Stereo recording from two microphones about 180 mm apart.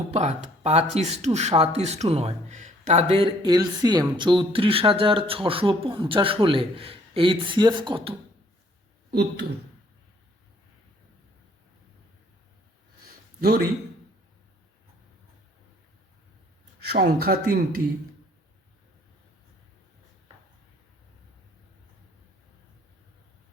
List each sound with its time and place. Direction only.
0.1 s speech: 40° right (ahead or behind)
9.0 s speech: 65° right (ahead or behind)
13.4 s speech: 60° right (ahead or behind)
16.8 s speech: 65° right (ahead or behind)